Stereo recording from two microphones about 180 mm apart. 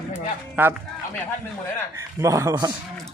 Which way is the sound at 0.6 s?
10° right (ahead or behind).